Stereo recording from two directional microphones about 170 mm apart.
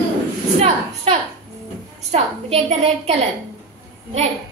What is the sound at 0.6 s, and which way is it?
A woman's voice, 35° right (ahead or behind).